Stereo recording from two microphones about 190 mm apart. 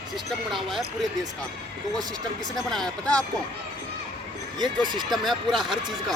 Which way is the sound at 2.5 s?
Centre (ahead or behind).